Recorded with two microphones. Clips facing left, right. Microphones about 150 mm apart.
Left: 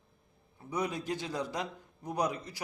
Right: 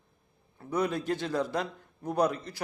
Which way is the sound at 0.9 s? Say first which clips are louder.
Right 5 dB; 60° right (ahead or behind).